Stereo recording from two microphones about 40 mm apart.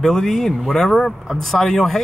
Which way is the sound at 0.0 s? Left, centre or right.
Centre.